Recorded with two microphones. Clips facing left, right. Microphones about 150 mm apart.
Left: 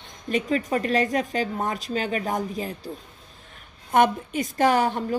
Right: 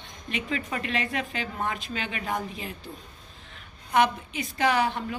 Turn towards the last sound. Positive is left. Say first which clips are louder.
# left 4 dB
turn(degrees=45)  # may be behind; listen again after turning